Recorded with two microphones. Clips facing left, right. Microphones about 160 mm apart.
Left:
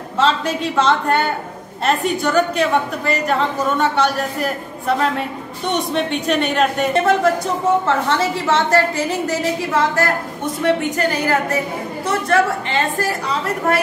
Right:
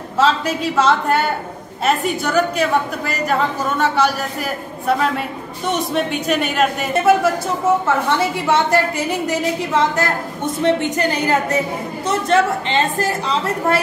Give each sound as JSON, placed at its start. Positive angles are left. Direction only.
{"t": 0.2, "sound": "a woman's voice", "side_deg": 0}